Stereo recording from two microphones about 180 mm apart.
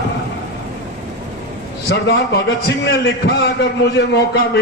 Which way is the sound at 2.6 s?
90° left.